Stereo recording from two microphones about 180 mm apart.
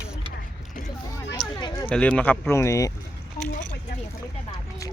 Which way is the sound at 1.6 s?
25° left (ahead or behind).